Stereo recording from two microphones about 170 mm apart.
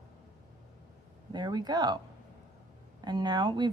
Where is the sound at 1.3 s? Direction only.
25° right (ahead or behind).